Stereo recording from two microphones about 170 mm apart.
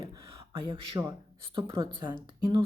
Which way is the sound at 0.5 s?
30° right (ahead or behind).